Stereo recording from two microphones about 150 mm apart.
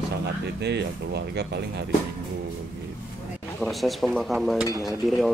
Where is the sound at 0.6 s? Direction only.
90° right.